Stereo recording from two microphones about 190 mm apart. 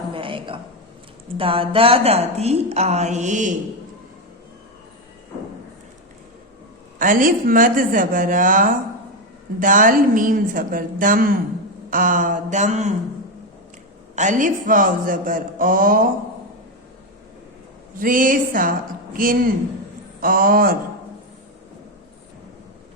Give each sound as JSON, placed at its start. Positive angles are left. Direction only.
{"t": 0.1, "sound": "a sound", "side_deg": -25}
{"t": 1.4, "sound": "a woman's voice", "side_deg": -30}
{"t": 7.0, "sound": "a man's voice", "side_deg": -45}
{"t": 14.2, "sound": "a man's voice", "side_deg": -40}
{"t": 18.0, "sound": "a man's voice", "side_deg": -45}